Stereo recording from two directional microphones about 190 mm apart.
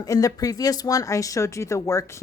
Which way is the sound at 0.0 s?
20° left (ahead or behind).